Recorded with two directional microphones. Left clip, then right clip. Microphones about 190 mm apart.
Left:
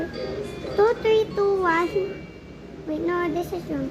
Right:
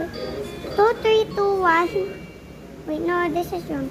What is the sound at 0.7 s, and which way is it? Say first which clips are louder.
Speech: right 2 dB; 30° right (ahead or behind).